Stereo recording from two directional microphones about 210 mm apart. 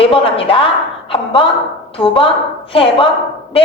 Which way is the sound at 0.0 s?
25° left (ahead or behind).